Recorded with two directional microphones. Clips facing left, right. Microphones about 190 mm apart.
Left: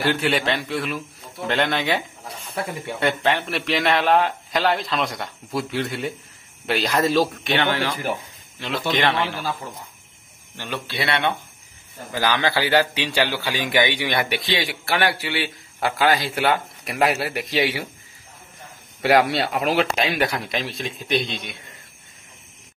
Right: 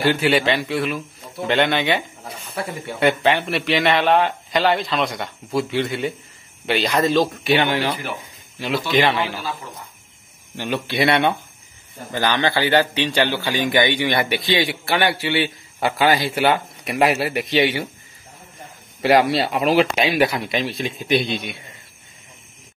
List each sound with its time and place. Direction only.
0.0 s a man's voice: centre (ahead or behind)
7.4 s a man's voice: 15° right (ahead or behind)
10.6 s speech: 15° right (ahead or behind)
12.1 s a man's voice: 5° left (ahead or behind)
18.9 s a man's voice: centre (ahead or behind)